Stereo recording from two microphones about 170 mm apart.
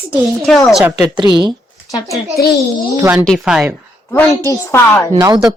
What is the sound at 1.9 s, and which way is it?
Speech, 20° left (ahead or behind).